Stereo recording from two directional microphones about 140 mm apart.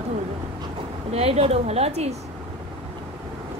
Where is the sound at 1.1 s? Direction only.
45° right (ahead or behind).